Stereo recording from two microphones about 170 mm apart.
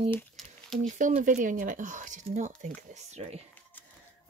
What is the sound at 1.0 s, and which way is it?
Speech, 50° right (ahead or behind).